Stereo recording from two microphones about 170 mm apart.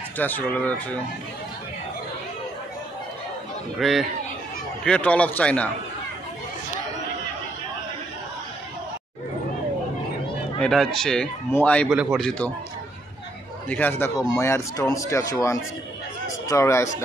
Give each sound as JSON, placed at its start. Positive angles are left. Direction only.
{"t": 0.2, "sound": "speech", "side_deg": 10}
{"t": 3.8, "sound": "speech", "side_deg": 0}
{"t": 10.6, "sound": "speech", "side_deg": 0}
{"t": 11.9, "sound": "speech", "side_deg": -5}
{"t": 13.7, "sound": "speech", "side_deg": 10}